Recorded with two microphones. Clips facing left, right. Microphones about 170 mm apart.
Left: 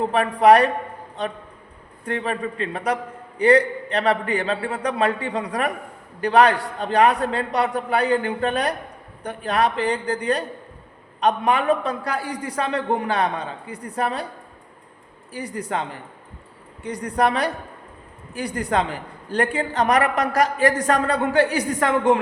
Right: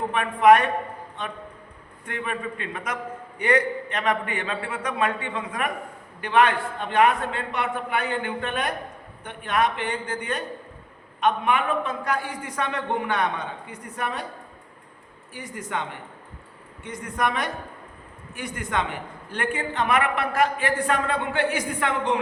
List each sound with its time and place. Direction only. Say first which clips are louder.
0.1 s a man's voice: left 1 dB; 35° left (ahead or behind)
15.3 s a man's voice: left 5 dB; 35° left (ahead or behind)